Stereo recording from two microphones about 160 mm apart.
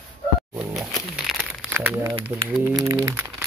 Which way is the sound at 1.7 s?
10° right (ahead or behind).